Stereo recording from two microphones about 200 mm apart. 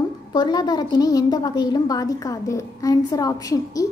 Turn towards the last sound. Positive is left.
turn(degrees=15)  # may be behind; listen again after turning